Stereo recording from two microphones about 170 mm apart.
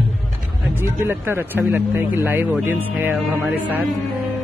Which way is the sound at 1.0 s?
15° right (ahead or behind).